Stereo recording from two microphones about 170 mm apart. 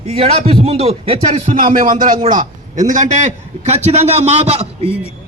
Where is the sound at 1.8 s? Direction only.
50° right (ahead or behind).